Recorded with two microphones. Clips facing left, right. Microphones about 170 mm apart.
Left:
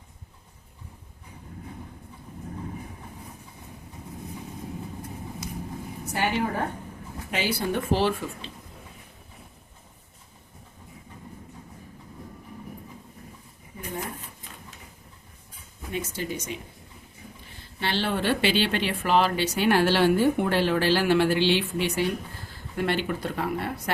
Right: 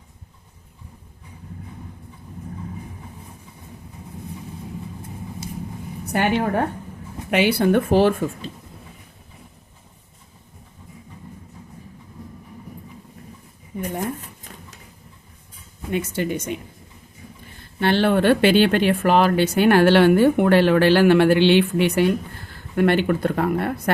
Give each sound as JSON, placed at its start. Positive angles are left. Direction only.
{"t": 6.1, "sound": "a woman's voice", "side_deg": -60}
{"t": 13.7, "sound": "a sound", "side_deg": -75}
{"t": 15.9, "sound": "a woman's voice", "side_deg": -65}
{"t": 17.7, "sound": "a woman's voice", "side_deg": -55}